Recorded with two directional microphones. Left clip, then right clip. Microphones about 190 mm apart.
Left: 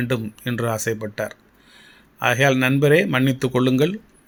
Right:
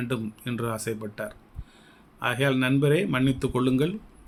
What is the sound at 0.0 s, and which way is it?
Speech, 30° left (ahead or behind).